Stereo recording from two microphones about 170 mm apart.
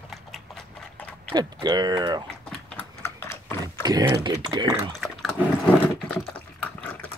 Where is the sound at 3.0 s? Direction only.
15° left (ahead or behind).